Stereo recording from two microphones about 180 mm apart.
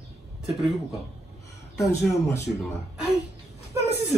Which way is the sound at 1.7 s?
15° left (ahead or behind).